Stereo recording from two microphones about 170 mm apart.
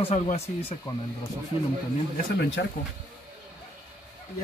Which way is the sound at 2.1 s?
80° left.